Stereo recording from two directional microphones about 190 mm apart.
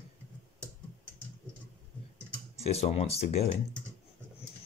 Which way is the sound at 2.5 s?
35° left (ahead or behind).